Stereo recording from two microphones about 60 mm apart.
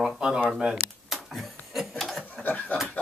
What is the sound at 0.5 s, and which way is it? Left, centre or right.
Speech, centre.